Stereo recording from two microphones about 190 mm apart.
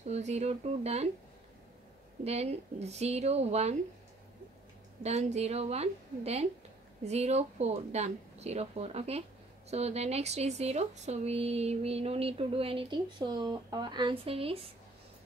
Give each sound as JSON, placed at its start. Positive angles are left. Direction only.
{"t": 0.1, "sound": "speech", "side_deg": -35}
{"t": 2.2, "sound": "speech", "side_deg": -35}
{"t": 5.0, "sound": "speech", "side_deg": -35}